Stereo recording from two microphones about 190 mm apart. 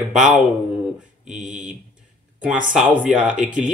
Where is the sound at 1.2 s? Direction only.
5° right (ahead or behind).